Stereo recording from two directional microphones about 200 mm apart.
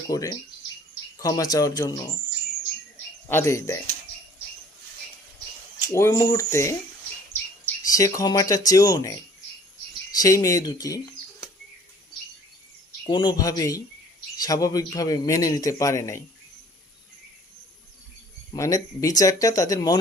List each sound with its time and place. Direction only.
0.1 s a man's voice: 15° left (ahead or behind)
3.2 s a man's voice: 15° left (ahead or behind)
5.9 s a man's voice: 15° left (ahead or behind)
10.2 s speech: 15° left (ahead or behind)
13.1 s a man's voice: 20° left (ahead or behind)
18.5 s a man's voice: 15° left (ahead or behind)